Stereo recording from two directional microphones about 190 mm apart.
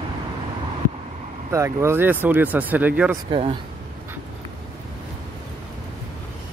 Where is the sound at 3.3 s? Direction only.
30° right (ahead or behind).